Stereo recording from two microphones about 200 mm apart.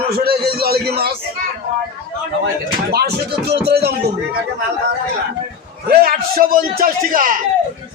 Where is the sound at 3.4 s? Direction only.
55° right (ahead or behind).